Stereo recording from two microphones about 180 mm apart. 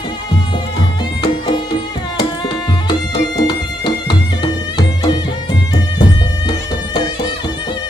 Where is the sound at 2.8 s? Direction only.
25° left (ahead or behind).